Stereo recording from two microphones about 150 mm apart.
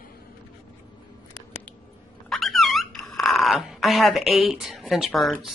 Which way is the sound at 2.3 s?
Centre (ahead or behind).